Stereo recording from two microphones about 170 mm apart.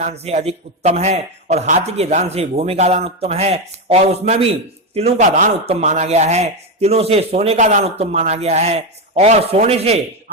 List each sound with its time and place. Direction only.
0.0 s a man's voice: 40° right (ahead or behind)